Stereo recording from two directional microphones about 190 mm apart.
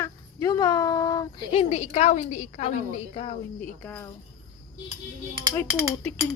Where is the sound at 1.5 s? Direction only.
35° left (ahead or behind).